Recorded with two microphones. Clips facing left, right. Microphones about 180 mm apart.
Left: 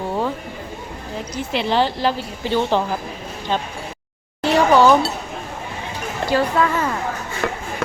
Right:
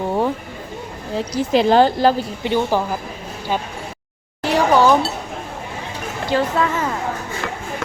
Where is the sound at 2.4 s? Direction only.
15° right (ahead or behind).